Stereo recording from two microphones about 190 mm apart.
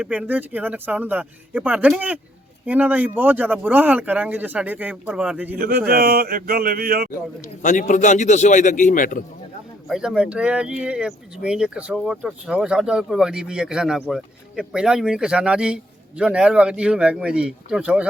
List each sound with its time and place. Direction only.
0.0 s speech: 5° right (ahead or behind)
5.5 s a sound: 50° right (ahead or behind)
7.6 s a man's voice: 40° left (ahead or behind)
9.9 s speech: 5° right (ahead or behind)